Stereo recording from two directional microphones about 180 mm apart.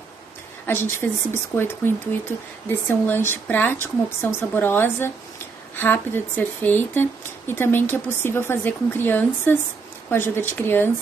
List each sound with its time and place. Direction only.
0.7 s speech: 15° left (ahead or behind)
2.9 s speech: 15° left (ahead or behind)